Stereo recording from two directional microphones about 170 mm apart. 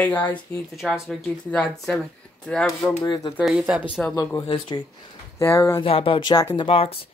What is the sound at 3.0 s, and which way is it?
Speech, 25° left (ahead or behind).